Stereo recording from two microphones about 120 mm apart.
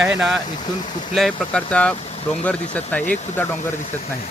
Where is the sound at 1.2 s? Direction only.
5° left (ahead or behind).